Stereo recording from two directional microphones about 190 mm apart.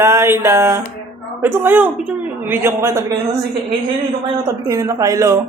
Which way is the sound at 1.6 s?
10° right (ahead or behind).